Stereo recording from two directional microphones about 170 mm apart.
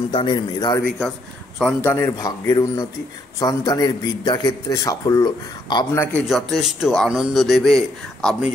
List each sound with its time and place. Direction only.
0.1 s a man's voice: 30° left (ahead or behind)
1.6 s a man's voice: 10° left (ahead or behind)
6.2 s a man's voice: centre (ahead or behind)